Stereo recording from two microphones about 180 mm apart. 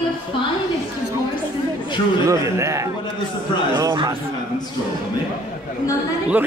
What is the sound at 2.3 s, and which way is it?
Speech, 15° right (ahead or behind).